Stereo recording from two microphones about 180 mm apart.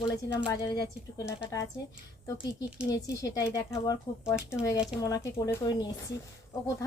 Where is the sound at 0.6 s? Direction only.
20° left (ahead or behind).